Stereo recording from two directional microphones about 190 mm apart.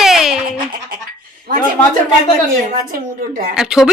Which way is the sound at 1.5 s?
55° right (ahead or behind).